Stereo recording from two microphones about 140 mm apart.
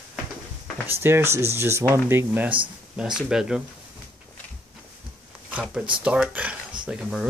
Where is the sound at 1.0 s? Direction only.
15° right (ahead or behind).